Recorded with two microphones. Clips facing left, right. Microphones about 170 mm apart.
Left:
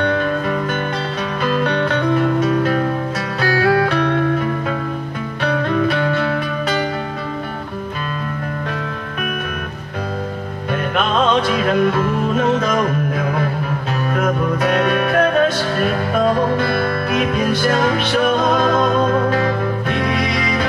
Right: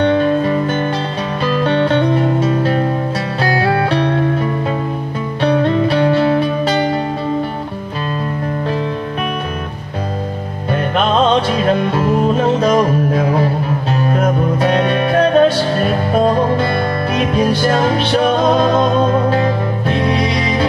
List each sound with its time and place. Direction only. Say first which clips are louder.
0.0 s music: right 5 dB; 30° right (ahead or behind)
5.4 s music: right 4 dB; 30° right (ahead or behind)
10.7 s music: right 4 dB; 35° right (ahead or behind)